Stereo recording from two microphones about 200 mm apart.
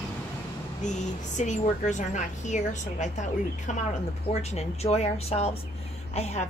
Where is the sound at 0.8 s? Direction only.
35° left (ahead or behind).